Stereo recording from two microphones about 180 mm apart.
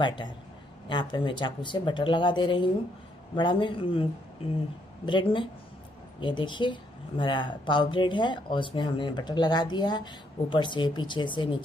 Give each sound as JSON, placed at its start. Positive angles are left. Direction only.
{"t": 0.0, "sound": "speech", "side_deg": 25}